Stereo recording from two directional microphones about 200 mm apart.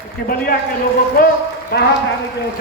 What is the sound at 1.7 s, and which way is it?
Speech, 55° left (ahead or behind).